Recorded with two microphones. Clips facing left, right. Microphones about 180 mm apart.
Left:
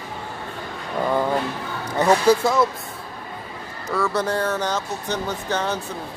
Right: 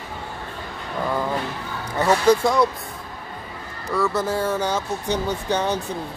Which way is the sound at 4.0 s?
5° right (ahead or behind).